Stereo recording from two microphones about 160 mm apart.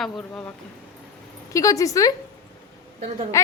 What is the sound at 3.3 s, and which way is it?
Speech, 20° left (ahead or behind).